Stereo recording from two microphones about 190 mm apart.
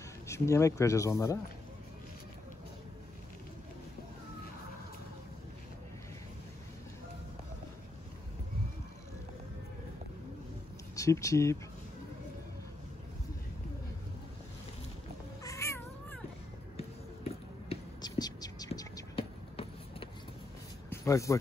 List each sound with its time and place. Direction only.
0.3 s speech: 15° left (ahead or behind)
11.0 s speech: 15° left (ahead or behind)
15.4 s cat: 15° left (ahead or behind)
16.7 s a sound: 30° left (ahead or behind)
18.0 s whispering: 20° left (ahead or behind)
20.9 s a sound: 15° left (ahead or behind)